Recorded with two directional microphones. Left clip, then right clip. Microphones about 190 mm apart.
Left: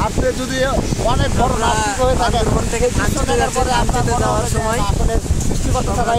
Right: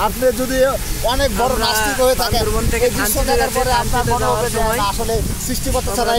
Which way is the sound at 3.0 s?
5° right (ahead or behind).